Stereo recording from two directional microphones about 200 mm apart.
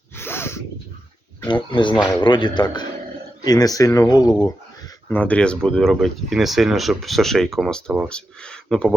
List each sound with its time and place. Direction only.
0.2 s a sound: 10° left (ahead or behind)
1.5 s speech: 25° left (ahead or behind)
5.0 s speech: 10° left (ahead or behind)